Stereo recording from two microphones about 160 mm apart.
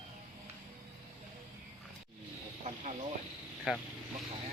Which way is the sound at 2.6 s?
45° right (ahead or behind).